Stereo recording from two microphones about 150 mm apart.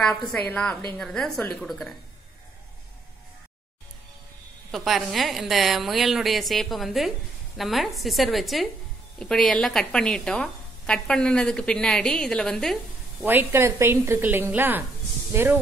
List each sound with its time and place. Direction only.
0.0 s a woman's voice: 5° left (ahead or behind)
4.6 s a woman's voice: centre (ahead or behind)
13.2 s a woman's voice: 10° right (ahead or behind)